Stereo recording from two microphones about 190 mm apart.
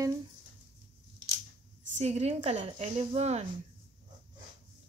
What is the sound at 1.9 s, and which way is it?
Speech, 35° right (ahead or behind).